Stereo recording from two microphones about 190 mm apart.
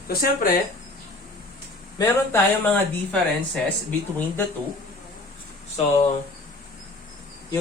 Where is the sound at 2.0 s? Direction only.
15° left (ahead or behind).